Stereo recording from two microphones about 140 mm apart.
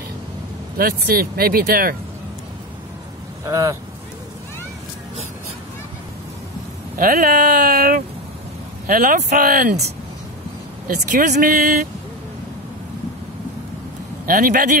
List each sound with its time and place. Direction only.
0.7 s speech: 90° right
3.4 s speech: 25° right (ahead or behind)
7.0 s speech: 90° right
10.9 s speech: 90° right
14.2 s speech: 75° right (ahead or behind)